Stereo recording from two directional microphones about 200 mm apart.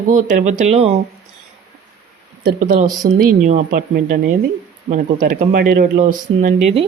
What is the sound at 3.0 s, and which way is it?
A woman's voice, 45° right (ahead or behind).